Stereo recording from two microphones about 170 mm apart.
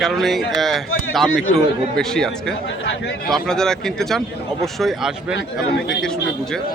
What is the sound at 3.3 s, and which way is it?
A man's voice, 5° left (ahead or behind).